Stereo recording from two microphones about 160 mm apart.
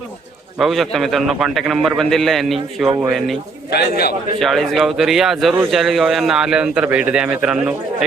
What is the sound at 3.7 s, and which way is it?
Speech, 80° left.